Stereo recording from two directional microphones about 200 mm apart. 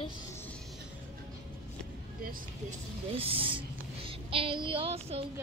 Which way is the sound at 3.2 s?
25° right (ahead or behind).